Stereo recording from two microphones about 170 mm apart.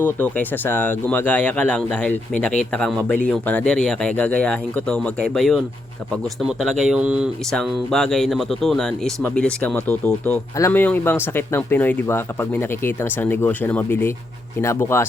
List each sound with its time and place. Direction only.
0.0 s speech: 10° left (ahead or behind)